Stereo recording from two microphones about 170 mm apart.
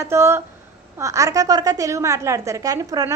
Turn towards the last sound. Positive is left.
turn(degrees=-20)  # may be behind; listen again after turning